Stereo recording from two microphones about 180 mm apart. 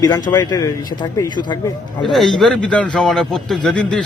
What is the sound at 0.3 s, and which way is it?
Speech, 20° left (ahead or behind).